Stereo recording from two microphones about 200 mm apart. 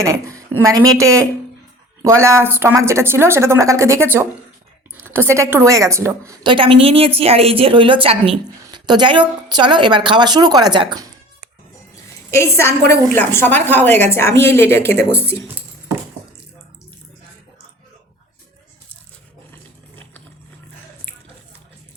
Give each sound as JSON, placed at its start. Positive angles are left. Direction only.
{"t": 0.0, "sound": "a woman's voice", "side_deg": -15}
{"t": 12.3, "sound": "a woman's voice", "side_deg": 15}